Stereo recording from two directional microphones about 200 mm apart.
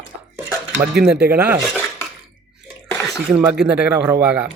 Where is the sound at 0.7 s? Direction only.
50° right (ahead or behind).